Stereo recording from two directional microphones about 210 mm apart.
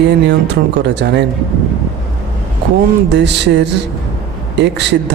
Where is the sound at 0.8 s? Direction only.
55° right (ahead or behind).